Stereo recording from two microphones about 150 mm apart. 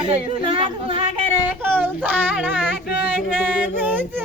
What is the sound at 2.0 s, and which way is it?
Speech, 10° right (ahead or behind).